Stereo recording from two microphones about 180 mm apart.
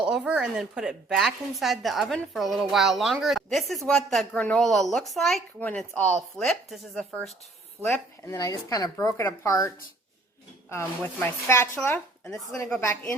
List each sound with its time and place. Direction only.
0.0 s a woman's voice: 5° right (ahead or behind)
7.8 s speech: 15° left (ahead or behind)